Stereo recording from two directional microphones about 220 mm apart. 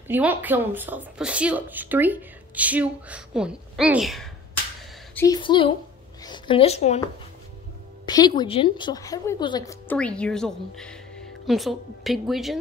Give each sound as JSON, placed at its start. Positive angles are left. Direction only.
{"t": 0.1, "sound": "speech", "side_deg": -10}
{"t": 5.1, "sound": "a woman's voice", "side_deg": 15}
{"t": 8.0, "sound": "a woman's voice", "side_deg": 20}
{"t": 9.9, "sound": "a woman's voice", "side_deg": 5}